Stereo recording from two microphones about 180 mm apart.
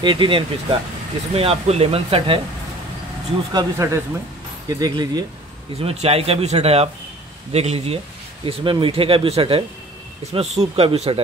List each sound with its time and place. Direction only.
0.0 s speech: 25° right (ahead or behind)
3.5 s speech: 15° right (ahead or behind)
5.8 s speech: 35° right (ahead or behind)